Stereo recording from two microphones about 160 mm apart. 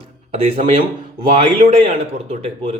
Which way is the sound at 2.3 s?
40° right (ahead or behind).